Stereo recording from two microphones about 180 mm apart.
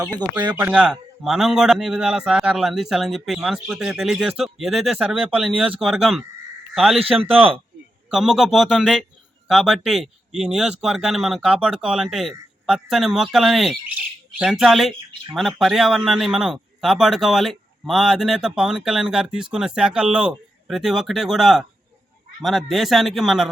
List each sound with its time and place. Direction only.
0.5 s a man's voice: 10° right (ahead or behind)
7.0 s speech: 30° right (ahead or behind)
8.1 s a man's voice: 5° right (ahead or behind)